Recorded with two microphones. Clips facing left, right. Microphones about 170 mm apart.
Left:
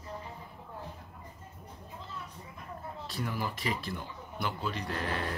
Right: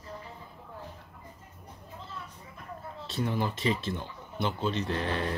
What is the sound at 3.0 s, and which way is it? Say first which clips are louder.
Speech: right 6 dB; 25° right (ahead or behind).